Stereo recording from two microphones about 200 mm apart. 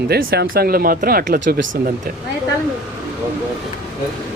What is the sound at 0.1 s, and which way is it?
Speech, 50° right (ahead or behind).